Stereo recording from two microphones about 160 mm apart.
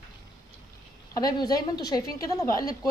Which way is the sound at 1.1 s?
25° left (ahead or behind).